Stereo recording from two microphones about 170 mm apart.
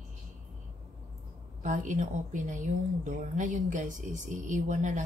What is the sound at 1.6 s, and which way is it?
Speech, 45° right (ahead or behind).